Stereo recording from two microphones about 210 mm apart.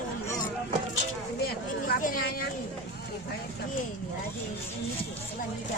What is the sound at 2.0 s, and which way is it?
Speech, 40° left (ahead or behind).